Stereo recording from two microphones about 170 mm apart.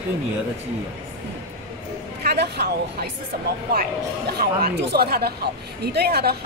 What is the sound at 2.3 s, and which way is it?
Speech, 70° right (ahead or behind).